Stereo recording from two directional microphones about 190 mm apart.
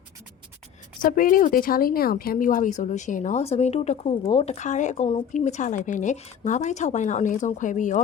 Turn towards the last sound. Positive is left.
turn(degrees=40)  # may be behind; listen again after turning